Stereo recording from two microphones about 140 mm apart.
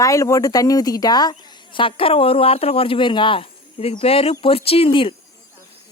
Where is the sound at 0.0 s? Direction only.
25° left (ahead or behind); by 5.1 s 40° left (ahead or behind).